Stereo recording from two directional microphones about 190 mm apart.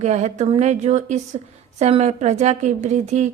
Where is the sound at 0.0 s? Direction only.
35° right (ahead or behind).